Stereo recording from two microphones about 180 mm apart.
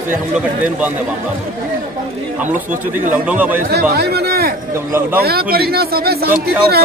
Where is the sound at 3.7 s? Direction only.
60° right (ahead or behind).